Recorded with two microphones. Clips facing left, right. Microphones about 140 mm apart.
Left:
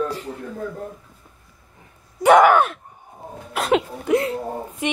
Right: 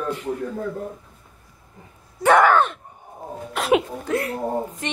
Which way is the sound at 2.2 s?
15° left (ahead or behind).